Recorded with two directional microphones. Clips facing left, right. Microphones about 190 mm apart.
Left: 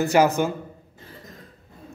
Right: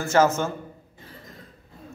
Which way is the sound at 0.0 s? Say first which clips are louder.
Left 1 dB; 15° left (ahead or behind).